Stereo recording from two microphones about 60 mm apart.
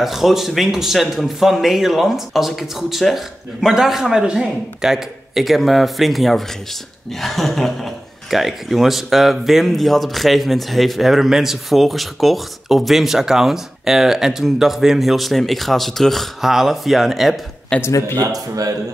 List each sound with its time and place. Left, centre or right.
0.0 s speech: centre
17.7 s speech: centre
18.1 s a man's voice: right